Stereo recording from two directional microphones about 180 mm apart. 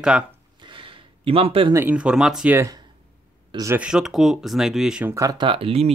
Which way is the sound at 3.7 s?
5° right (ahead or behind).